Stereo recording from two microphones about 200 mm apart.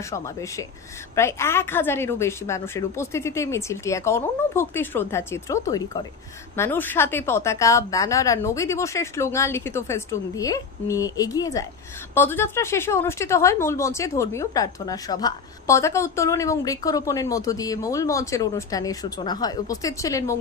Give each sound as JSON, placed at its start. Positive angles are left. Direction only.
{"t": 0.1, "sound": "speech", "side_deg": 15}